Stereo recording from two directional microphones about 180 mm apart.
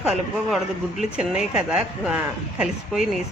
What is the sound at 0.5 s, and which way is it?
Speech, 5° right (ahead or behind).